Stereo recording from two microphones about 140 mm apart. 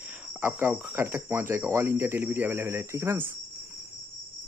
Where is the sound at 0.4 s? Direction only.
15° right (ahead or behind).